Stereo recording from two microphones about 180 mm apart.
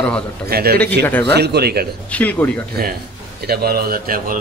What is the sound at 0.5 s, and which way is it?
Speech, 60° right (ahead or behind).